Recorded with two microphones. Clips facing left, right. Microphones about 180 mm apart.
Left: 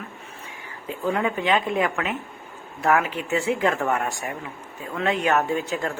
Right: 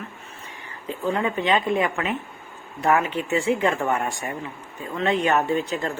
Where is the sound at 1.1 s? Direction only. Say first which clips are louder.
Even; 5° left (ahead or behind).